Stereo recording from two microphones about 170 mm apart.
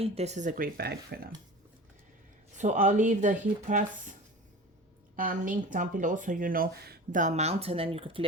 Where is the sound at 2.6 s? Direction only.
45° right (ahead or behind).